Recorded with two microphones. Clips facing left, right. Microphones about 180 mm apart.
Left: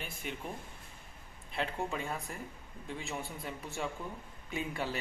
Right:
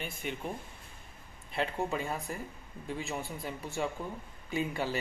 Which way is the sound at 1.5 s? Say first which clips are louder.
Right 3 dB; centre (ahead or behind).